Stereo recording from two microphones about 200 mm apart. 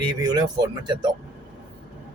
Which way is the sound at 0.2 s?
20° right (ahead or behind).